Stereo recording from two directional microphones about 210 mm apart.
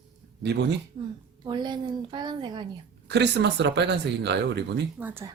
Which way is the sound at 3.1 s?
55° right (ahead or behind).